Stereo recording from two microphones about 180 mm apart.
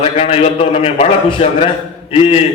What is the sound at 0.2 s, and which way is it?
A man's voice, 35° left (ahead or behind).